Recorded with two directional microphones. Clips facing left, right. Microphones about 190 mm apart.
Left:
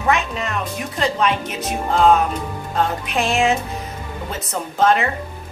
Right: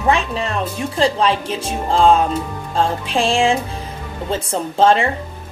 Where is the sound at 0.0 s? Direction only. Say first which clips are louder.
Right 2 dB; 30° right (ahead or behind).